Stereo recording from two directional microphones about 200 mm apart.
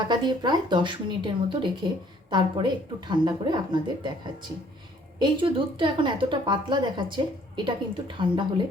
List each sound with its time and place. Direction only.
0.1 s a woman's voice: 20° right (ahead or behind)
5.2 s a woman's voice: 25° right (ahead or behind)